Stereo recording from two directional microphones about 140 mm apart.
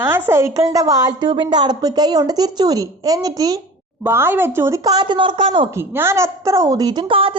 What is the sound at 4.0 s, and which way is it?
A woman's voice, 15° right (ahead or behind).